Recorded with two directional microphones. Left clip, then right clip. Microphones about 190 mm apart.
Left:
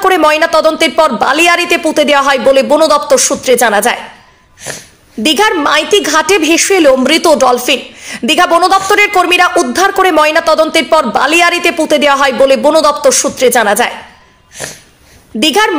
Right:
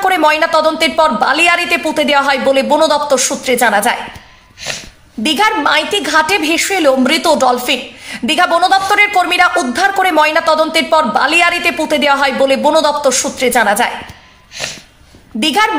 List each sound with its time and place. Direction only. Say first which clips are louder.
0.0 s a woman's voice: left 3 dB; 15° left (ahead or behind)
5.2 s a woman's voice: left 3 dB; 15° left (ahead or behind)
14.6 s wheeze: right 2 dB; 50° left (ahead or behind)
15.4 s a woman's voice: left 3 dB; 15° left (ahead or behind)